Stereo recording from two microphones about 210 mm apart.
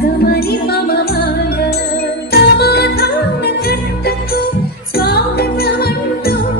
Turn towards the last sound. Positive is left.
turn(degrees=50)  # may be behind; listen again after turning